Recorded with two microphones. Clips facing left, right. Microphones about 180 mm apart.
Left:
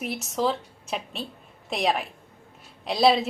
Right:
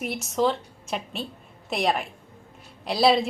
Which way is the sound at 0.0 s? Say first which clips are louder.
Right 2 dB; centre (ahead or behind).